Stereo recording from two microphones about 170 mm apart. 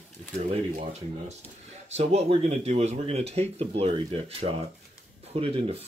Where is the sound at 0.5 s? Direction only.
40° right (ahead or behind).